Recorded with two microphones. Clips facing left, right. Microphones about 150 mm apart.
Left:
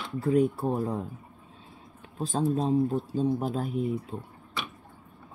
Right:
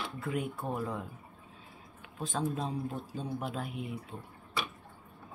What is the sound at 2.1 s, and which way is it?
Speech, 35° left (ahead or behind).